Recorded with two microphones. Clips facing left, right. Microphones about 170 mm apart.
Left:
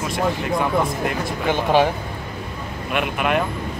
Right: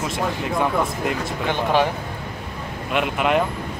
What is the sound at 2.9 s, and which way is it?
Speech, 20° right (ahead or behind).